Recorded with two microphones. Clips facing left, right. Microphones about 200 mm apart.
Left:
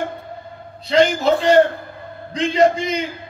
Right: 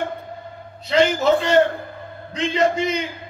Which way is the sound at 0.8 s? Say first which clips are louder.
Left 1 dB; 35° left (ahead or behind).